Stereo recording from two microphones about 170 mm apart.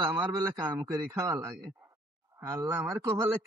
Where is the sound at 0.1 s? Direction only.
20° right (ahead or behind).